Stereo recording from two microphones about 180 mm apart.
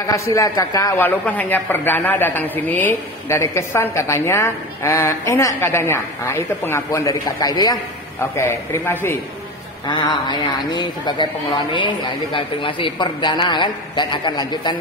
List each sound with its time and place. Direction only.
0.0 s a man's voice: 15° left (ahead or behind)
9.8 s a man's voice: 25° left (ahead or behind)